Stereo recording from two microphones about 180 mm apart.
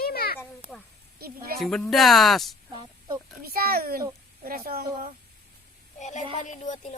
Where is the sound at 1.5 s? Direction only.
Centre (ahead or behind).